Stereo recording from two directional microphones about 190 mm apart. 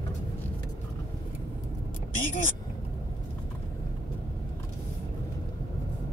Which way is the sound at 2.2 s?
45° left (ahead or behind).